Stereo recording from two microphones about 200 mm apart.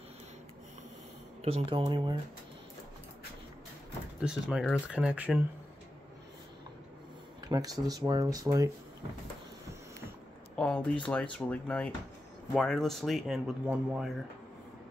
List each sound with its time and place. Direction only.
1.4 s speech: 25° right (ahead or behind)
4.2 s speech: 5° right (ahead or behind)
7.4 s speech: 20° right (ahead or behind)
10.5 s speech: 5° left (ahead or behind)